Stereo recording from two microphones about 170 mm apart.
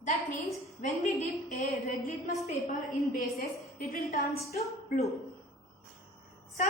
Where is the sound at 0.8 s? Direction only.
50° left (ahead or behind).